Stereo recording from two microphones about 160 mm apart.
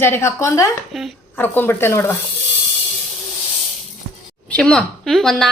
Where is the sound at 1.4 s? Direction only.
15° left (ahead or behind).